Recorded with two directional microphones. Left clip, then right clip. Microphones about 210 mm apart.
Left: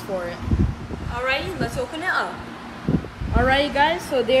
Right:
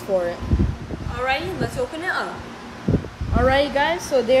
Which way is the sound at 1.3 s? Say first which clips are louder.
Right 1 dB; 45° right (ahead or behind).